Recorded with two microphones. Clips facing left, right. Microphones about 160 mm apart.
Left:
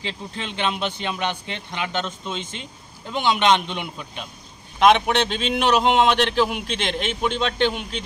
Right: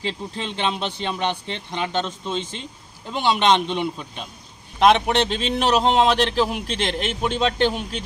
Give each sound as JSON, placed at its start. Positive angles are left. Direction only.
{"t": 0.0, "sound": "a man's voice", "side_deg": -35}